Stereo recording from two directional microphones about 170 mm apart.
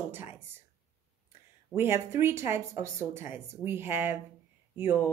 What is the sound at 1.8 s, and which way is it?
A woman's voice, 15° right (ahead or behind).